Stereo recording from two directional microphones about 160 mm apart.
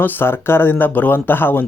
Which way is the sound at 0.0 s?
15° left (ahead or behind).